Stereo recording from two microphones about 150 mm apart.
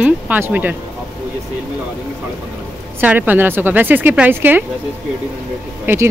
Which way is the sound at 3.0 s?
10° right (ahead or behind).